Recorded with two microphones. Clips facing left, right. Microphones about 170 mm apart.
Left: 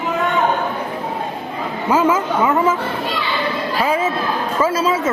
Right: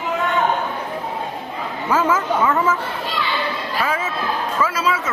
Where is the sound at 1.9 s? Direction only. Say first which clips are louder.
Left 3 dB; 15° left (ahead or behind).